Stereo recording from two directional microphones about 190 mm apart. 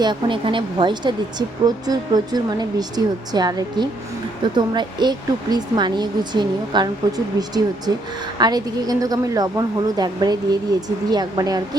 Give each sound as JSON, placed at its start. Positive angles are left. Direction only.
{"t": 0.0, "sound": "speech", "side_deg": -25}